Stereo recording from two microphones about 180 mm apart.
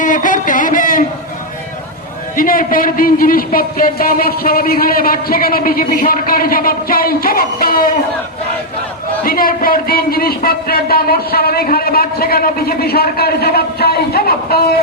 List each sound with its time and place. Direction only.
0.0 s a sound: 45° left (ahead or behind)
2.3 s a man's voice: 50° left (ahead or behind)
9.2 s speech: 55° left (ahead or behind)